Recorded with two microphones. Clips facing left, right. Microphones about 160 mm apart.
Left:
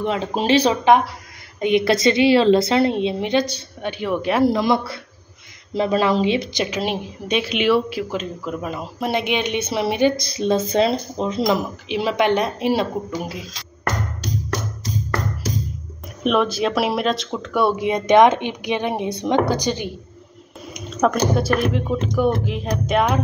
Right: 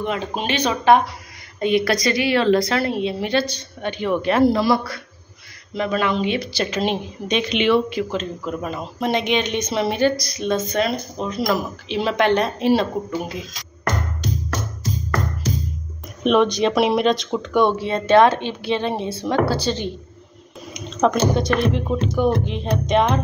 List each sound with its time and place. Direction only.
0.0 s speech: 30° left (ahead or behind)
1.6 s a woman's voice: 20° left (ahead or behind)
6.6 s speech: 10° left (ahead or behind)
10.1 s a woman's voice: 30° left (ahead or behind)
11.4 s speech: 10° left (ahead or behind)
16.3 s speech: 5° left (ahead or behind)